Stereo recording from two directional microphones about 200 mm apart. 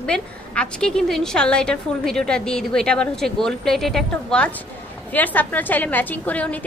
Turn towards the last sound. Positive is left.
turn(degrees=5)  # may be behind; listen again after turning